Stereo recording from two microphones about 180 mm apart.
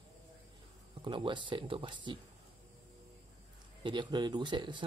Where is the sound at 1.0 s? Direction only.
25° right (ahead or behind).